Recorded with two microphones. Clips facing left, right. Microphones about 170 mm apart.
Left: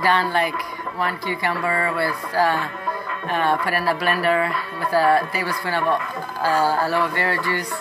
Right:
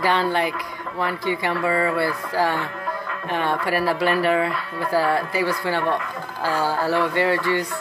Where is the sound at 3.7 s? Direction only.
15° right (ahead or behind).